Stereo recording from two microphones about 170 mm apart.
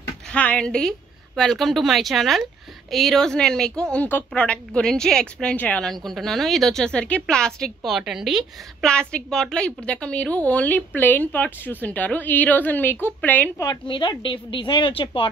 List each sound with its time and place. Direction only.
0.3 s a woman's voice: 5° left (ahead or behind)
13.7 s a woman's voice: 30° left (ahead or behind)